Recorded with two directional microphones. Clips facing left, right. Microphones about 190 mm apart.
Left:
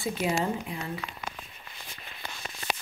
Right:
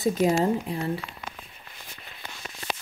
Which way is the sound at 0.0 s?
40° right (ahead or behind).